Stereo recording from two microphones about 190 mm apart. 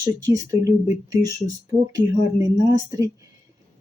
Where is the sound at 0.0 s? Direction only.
20° right (ahead or behind).